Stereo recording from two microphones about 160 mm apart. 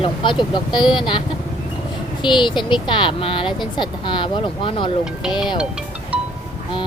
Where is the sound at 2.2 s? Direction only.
30° left (ahead or behind).